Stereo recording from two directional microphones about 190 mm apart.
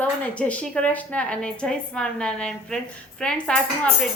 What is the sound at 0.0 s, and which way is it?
Speech, 5° left (ahead or behind).